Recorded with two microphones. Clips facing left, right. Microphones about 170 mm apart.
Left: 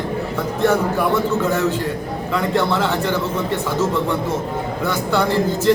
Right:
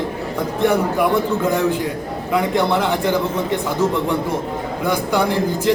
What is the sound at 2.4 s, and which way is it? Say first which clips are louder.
Speech: right 1 dB; 15° right (ahead or behind).